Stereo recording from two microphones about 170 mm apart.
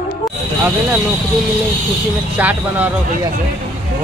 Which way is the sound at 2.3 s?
10° right (ahead or behind).